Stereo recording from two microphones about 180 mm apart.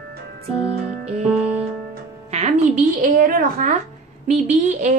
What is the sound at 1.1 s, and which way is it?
Music, 35° right (ahead or behind).